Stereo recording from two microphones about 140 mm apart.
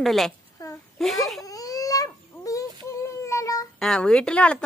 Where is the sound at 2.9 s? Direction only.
20° left (ahead or behind).